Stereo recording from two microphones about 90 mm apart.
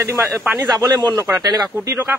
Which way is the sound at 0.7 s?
50° right (ahead or behind).